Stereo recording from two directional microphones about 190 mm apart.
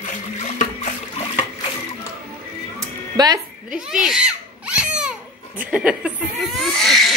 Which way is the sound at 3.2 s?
20° right (ahead or behind).